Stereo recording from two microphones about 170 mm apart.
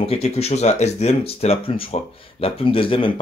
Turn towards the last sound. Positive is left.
turn(degrees=30)  # may be behind; listen again after turning